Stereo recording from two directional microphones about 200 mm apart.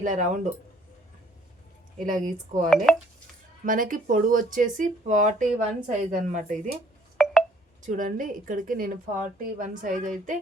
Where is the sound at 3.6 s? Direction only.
45° right (ahead or behind).